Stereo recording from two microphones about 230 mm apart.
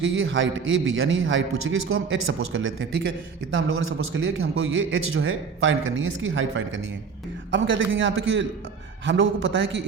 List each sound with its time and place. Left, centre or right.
0.0 s a man's voice: right